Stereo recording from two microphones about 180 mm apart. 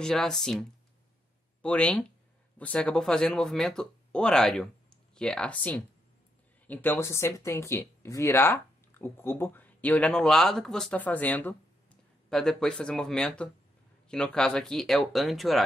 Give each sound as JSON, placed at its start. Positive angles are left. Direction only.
{"t": 0.0, "sound": "speech", "side_deg": 0}